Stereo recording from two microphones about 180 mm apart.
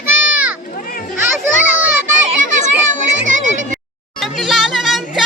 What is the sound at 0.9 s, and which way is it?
Children playing, 50° left (ahead or behind).